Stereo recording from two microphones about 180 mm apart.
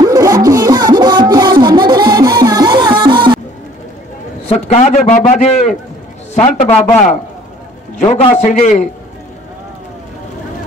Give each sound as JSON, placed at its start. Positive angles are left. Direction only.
{"t": 0.0, "sound": "music", "side_deg": -15}
{"t": 4.5, "sound": "a man's voice", "side_deg": 35}
{"t": 8.0, "sound": "a man's voice", "side_deg": 30}